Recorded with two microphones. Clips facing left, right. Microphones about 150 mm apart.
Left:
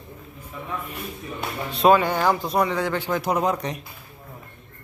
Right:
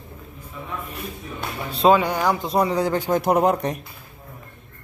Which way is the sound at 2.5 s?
35° right (ahead or behind).